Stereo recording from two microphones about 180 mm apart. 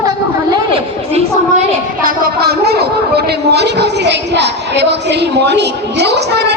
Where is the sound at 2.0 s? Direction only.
60° right (ahead or behind).